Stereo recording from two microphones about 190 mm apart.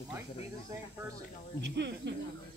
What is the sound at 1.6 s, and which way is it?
Speech, 65° right (ahead or behind).